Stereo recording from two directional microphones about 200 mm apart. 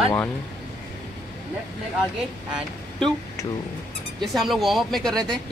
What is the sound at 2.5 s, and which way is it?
Speech, centre (ahead or behind).